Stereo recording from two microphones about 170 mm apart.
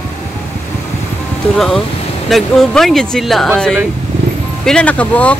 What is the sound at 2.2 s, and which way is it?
Speech, centre (ahead or behind).